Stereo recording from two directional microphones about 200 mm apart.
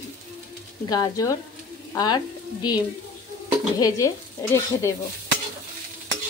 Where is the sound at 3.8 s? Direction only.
15° left (ahead or behind).